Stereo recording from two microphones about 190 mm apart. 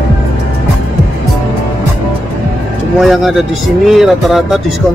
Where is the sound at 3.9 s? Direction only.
Centre (ahead or behind).